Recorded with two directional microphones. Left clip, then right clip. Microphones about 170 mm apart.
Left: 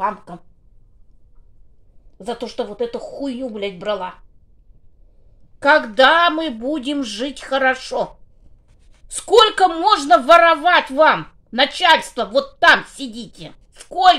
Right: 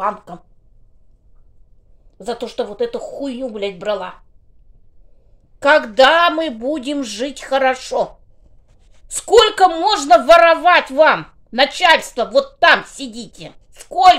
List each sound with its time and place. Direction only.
0.0 s speech: centre (ahead or behind)
2.1 s speech: 5° right (ahead or behind)
5.6 s speech: 5° right (ahead or behind)
9.1 s speech: 5° right (ahead or behind)